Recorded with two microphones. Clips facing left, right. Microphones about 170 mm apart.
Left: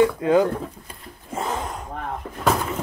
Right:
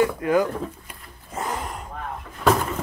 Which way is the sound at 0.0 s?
25° left (ahead or behind).